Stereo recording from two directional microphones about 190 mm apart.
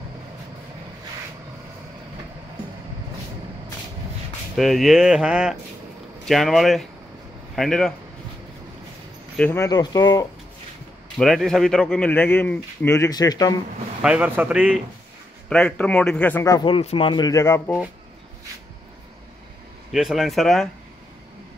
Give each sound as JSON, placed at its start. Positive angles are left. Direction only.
{"t": 4.6, "sound": "speech", "side_deg": 0}
{"t": 9.4, "sound": "speech", "side_deg": 15}
{"t": 11.1, "sound": "a man's voice", "side_deg": 0}
{"t": 14.0, "sound": "speech", "side_deg": -5}
{"t": 15.5, "sound": "a man's voice", "side_deg": 5}
{"t": 19.9, "sound": "speech", "side_deg": 0}